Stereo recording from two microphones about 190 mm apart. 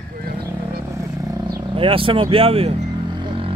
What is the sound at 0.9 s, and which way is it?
Vehicle, 20° right (ahead or behind).